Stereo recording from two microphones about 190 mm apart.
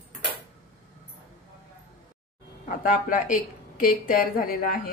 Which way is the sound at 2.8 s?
45° left (ahead or behind).